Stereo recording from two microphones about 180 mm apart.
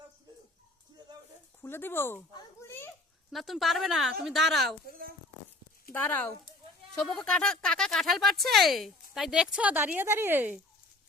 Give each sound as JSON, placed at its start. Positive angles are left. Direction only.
{"t": 1.6, "sound": "speech", "side_deg": 10}
{"t": 3.3, "sound": "speech", "side_deg": 0}
{"t": 4.9, "sound": "a woman's voice", "side_deg": -55}
{"t": 5.9, "sound": "speech", "side_deg": 10}